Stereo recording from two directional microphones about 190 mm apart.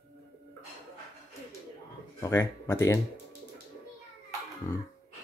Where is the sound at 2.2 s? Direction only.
15° left (ahead or behind).